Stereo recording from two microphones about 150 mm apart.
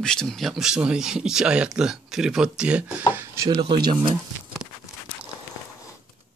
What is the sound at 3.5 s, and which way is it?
Speech, 30° right (ahead or behind).